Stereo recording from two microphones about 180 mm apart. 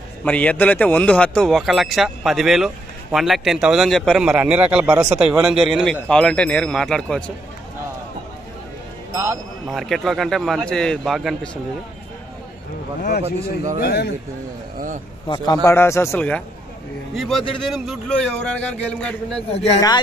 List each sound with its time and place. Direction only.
0.2 s speech: 10° left (ahead or behind)
9.1 s music: 15° right (ahead or behind)
9.7 s speech: centre (ahead or behind)
13.7 s a man's voice: 60° left (ahead or behind)
15.2 s a man's voice: 25° left (ahead or behind)
15.6 s speech: 15° left (ahead or behind)
19.5 s speech: 35° left (ahead or behind)